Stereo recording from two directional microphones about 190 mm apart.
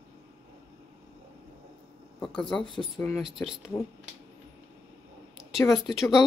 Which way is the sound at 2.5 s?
25° left (ahead or behind).